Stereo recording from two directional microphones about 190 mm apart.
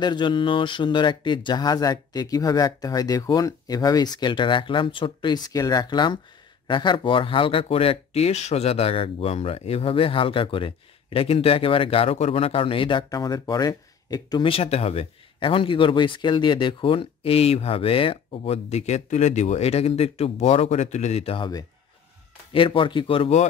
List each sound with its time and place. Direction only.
0.0 s speech: 25° left (ahead or behind)